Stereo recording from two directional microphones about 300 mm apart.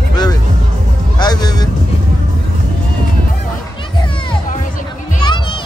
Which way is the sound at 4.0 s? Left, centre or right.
Centre.